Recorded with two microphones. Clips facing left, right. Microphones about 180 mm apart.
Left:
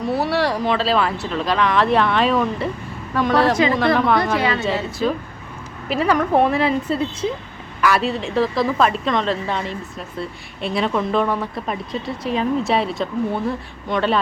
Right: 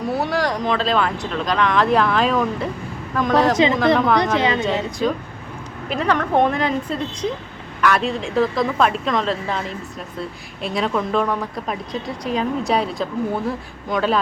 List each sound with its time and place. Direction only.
0.0 s speech: centre (ahead or behind)
4.4 s a woman's voice: 20° right (ahead or behind)
5.9 s speech: 5° left (ahead or behind)